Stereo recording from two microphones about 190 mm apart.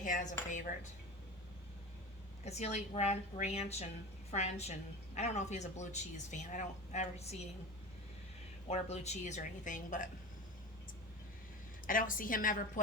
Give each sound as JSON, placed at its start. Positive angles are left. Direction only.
{"t": 0.0, "sound": "speech", "side_deg": 40}
{"t": 2.4, "sound": "speech", "side_deg": 35}
{"t": 8.6, "sound": "speech", "side_deg": 35}
{"t": 11.9, "sound": "a woman's voice", "side_deg": 45}